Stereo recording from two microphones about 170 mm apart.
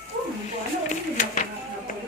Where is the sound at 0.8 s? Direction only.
45° left (ahead or behind).